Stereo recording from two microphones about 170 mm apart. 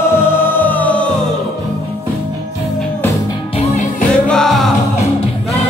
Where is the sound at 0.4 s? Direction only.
10° left (ahead or behind).